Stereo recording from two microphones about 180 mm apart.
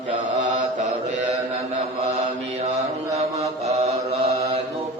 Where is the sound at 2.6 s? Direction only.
40° right (ahead or behind).